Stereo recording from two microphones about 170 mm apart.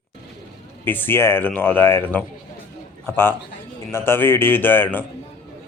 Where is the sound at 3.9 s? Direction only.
15° left (ahead or behind).